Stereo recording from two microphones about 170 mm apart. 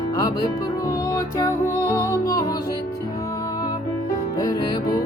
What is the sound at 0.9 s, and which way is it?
Music, 20° left (ahead or behind).